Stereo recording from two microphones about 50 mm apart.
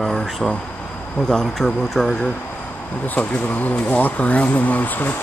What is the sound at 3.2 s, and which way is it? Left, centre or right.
Speech, left.